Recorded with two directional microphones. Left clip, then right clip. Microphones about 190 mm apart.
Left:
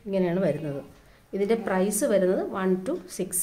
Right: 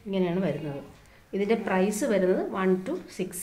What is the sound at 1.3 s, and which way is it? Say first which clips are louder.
A woman's voice: left 1 dB; 30° left (ahead or behind).